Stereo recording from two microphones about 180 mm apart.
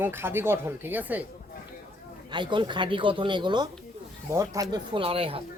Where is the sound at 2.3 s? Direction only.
25° right (ahead or behind).